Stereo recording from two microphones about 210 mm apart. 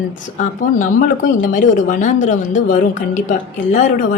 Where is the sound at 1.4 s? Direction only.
35° left (ahead or behind).